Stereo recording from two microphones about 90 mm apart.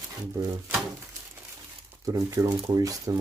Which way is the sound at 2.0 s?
40° right (ahead or behind).